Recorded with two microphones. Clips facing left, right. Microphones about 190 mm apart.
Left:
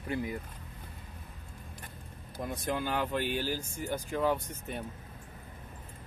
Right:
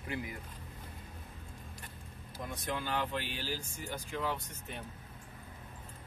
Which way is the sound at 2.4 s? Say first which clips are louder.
Left 5 dB; 45° left (ahead or behind).